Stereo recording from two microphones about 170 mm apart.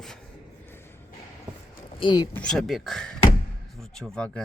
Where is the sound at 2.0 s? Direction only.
25° left (ahead or behind).